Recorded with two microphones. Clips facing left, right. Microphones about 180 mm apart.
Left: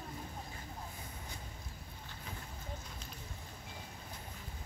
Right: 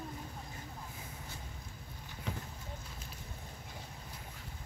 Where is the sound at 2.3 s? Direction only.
75° right (ahead or behind).